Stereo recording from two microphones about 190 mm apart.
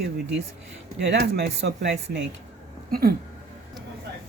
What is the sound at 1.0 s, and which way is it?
Speech, 65° right (ahead or behind).